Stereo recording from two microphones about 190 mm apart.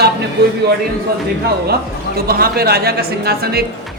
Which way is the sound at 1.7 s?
55° right (ahead or behind).